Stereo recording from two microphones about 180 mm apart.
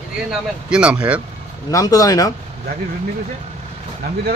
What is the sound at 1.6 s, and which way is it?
Speech, 20° left (ahead or behind).